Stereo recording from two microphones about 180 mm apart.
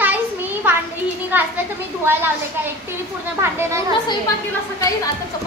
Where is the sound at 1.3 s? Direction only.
10° right (ahead or behind).